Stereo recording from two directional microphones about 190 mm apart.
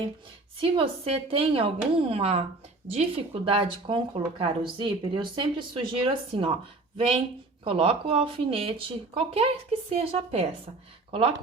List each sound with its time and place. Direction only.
0.6 s speech: 30° right (ahead or behind)